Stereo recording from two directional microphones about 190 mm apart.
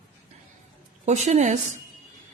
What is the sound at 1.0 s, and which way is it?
Speech, 35° right (ahead or behind).